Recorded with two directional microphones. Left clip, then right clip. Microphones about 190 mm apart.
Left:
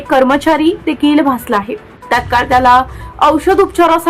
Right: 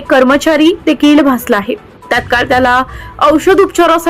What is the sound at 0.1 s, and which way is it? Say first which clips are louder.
A woman's voice: right 2 dB; 15° right (ahead or behind).